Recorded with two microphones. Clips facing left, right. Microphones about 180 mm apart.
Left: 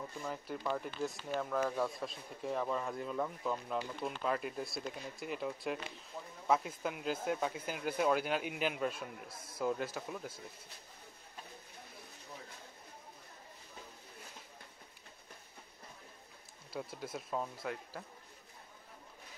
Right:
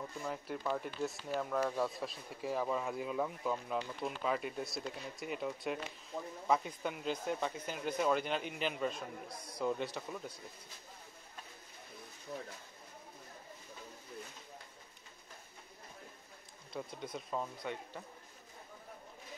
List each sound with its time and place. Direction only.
0.2 s speech: centre (ahead or behind)
9.3 s a man's voice: 25° left (ahead or behind)
9.6 s speech: 5° left (ahead or behind)
16.7 s speech: 5° left (ahead or behind)